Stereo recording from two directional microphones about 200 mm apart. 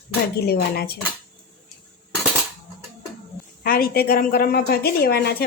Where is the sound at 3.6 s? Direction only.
45° left (ahead or behind).